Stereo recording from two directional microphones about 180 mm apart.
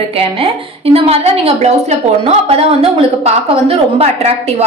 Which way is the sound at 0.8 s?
35° right (ahead or behind).